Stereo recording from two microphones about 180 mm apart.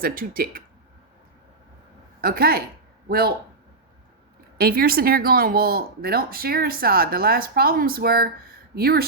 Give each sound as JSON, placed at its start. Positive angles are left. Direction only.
{"t": 0.0, "sound": "speech", "side_deg": -50}
{"t": 2.2, "sound": "speech", "side_deg": -55}
{"t": 4.5, "sound": "speech", "side_deg": -55}